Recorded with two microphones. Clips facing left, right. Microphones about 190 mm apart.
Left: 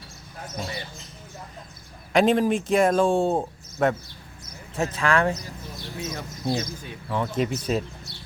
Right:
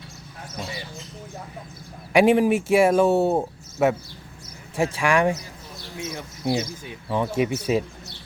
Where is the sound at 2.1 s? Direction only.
10° right (ahead or behind).